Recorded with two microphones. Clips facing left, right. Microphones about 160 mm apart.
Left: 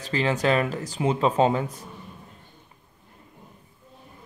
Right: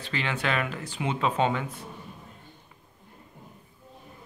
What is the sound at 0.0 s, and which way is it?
Speech, 35° left (ahead or behind).